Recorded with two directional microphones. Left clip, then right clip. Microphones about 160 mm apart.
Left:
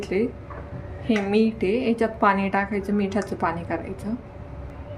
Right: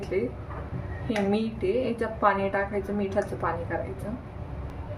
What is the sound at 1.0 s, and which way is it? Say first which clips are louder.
A woman's voice: left 6 dB; 70° left (ahead or behind).